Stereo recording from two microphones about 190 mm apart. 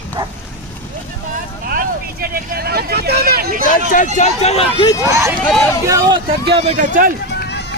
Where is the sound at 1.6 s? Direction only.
50° right (ahead or behind).